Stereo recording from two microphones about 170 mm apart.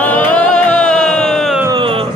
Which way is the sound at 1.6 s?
30° right (ahead or behind).